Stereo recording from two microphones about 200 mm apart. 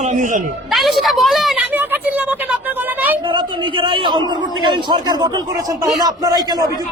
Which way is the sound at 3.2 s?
25° right (ahead or behind).